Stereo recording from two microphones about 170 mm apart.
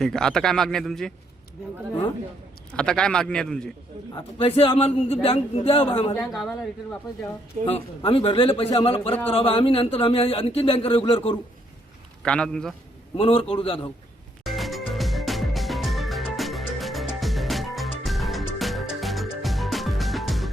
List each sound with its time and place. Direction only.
0.0 s a man's voice: 5° left (ahead or behind)
2.7 s a man's voice: 5° left (ahead or behind)
4.1 s speech: 35° left (ahead or behind)
6.3 s a man's voice: centre (ahead or behind)
7.7 s speech: 35° left (ahead or behind)
12.2 s a man's voice: 5° left (ahead or behind)
13.1 s speech: 30° left (ahead or behind)
14.4 s music: centre (ahead or behind)